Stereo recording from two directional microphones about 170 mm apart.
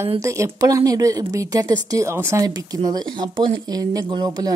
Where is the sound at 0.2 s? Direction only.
15° right (ahead or behind).